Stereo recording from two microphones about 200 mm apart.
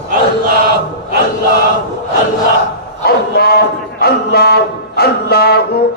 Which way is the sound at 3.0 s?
50° left (ahead or behind).